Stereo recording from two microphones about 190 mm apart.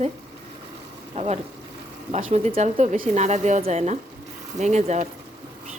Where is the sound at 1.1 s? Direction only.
35° right (ahead or behind).